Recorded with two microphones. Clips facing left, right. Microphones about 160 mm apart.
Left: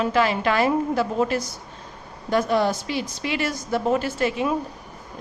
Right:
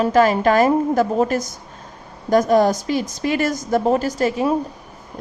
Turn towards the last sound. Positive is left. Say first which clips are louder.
# right 4 dB
turn(degrees=-40)  # may be behind; listen again after turning